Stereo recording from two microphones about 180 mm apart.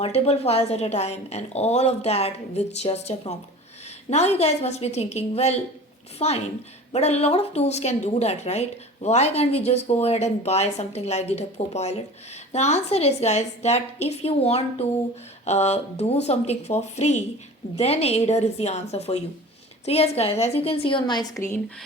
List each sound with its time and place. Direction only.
0.0 s a woman's voice: 35° left (ahead or behind); by 21.6 s 15° left (ahead or behind)